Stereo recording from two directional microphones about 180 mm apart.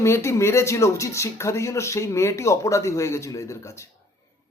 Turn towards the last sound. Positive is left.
turn(degrees=15)  # may be behind; listen again after turning